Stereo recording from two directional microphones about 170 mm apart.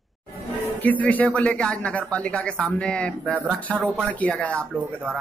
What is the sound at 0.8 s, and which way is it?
A man's voice, 10° left (ahead or behind).